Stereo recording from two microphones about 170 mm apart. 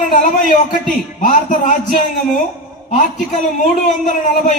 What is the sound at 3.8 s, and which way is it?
Speech, 45° left (ahead or behind).